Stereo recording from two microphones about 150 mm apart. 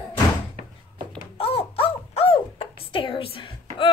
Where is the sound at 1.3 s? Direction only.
40° left (ahead or behind).